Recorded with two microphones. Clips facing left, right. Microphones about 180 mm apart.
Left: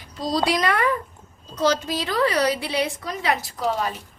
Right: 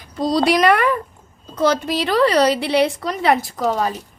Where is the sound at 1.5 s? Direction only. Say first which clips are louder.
Right 4 dB; 55° right (ahead or behind).